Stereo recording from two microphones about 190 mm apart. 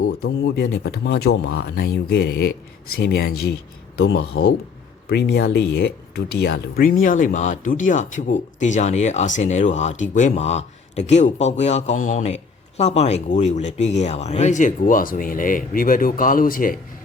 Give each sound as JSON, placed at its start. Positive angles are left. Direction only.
{"t": 0.2, "sound": "speech", "side_deg": 65}
{"t": 7.0, "sound": "speech", "side_deg": 45}